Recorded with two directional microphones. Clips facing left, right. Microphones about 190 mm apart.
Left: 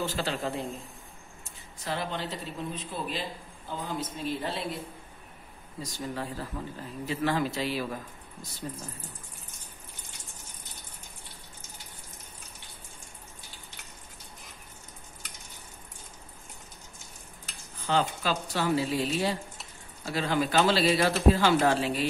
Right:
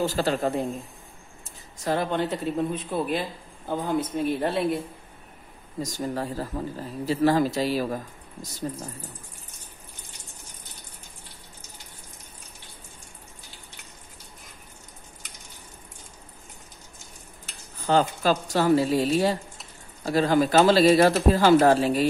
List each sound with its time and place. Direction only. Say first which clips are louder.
0.0 s speech: right 7 dB; 40° right (ahead or behind)
1.9 s a man's voice: right 8 dB; 50° right (ahead or behind)
5.8 s a man's voice: right 6 dB; 45° right (ahead or behind)
17.8 s a man's voice: right 6 dB; 45° right (ahead or behind)